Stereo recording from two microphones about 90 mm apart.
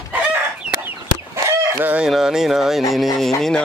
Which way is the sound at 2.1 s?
5° right (ahead or behind).